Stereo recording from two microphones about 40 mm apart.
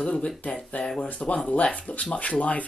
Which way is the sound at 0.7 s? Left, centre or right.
Left.